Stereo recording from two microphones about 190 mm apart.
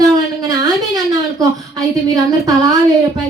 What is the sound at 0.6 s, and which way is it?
A woman's voice, 20° right (ahead or behind).